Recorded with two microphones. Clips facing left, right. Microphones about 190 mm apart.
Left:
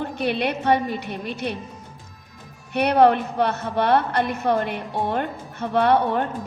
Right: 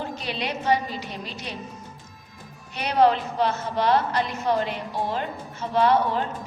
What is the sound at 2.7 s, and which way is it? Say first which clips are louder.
A woman's voice: left 4 dB; 60° left (ahead or behind).